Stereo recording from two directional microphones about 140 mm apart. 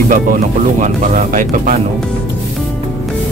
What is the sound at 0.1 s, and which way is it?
Speech, 70° right (ahead or behind).